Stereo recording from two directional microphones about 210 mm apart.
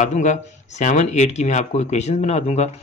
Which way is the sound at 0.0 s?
35° left (ahead or behind).